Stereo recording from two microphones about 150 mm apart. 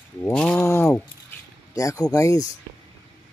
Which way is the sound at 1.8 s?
20° left (ahead or behind).